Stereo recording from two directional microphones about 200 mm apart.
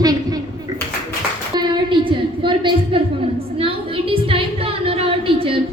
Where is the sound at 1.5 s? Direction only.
25° right (ahead or behind).